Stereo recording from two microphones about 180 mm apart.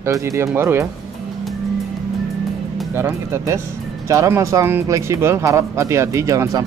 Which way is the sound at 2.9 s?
15° right (ahead or behind).